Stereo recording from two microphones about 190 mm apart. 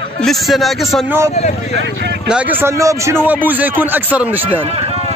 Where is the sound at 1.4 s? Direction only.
35° left (ahead or behind).